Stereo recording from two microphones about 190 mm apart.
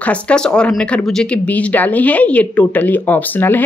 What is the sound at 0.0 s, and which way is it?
Speech, 5° left (ahead or behind).